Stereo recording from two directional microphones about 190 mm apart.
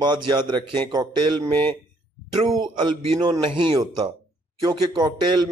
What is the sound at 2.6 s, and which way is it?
Speech, 25° right (ahead or behind).